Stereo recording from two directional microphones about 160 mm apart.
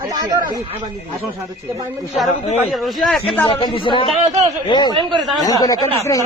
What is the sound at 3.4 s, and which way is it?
Speech, 30° left (ahead or behind).